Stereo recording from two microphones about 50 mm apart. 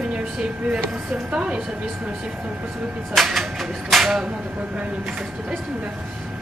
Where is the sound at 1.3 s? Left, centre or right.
Centre.